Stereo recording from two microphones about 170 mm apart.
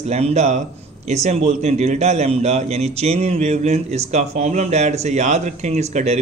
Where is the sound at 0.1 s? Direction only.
40° right (ahead or behind).